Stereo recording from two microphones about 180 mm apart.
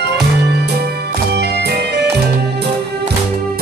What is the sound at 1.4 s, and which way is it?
Music, 65° right (ahead or behind).